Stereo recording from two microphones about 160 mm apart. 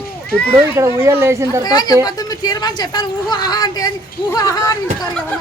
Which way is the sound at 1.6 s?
25° left (ahead or behind).